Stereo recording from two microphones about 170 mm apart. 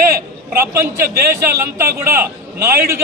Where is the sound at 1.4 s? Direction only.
15° right (ahead or behind).